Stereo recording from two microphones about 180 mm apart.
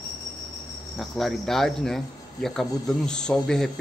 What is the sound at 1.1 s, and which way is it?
Speech, centre (ahead or behind).